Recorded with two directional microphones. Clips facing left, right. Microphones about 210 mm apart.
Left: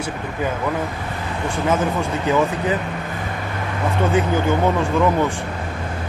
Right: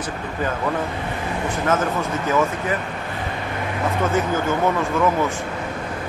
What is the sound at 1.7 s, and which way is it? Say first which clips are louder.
Speech: left 1 dB; 15° left (ahead or behind).